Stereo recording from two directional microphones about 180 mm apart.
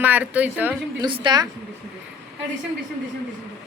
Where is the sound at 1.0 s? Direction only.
25° right (ahead or behind).